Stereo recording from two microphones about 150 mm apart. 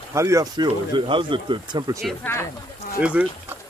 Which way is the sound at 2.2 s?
15° left (ahead or behind).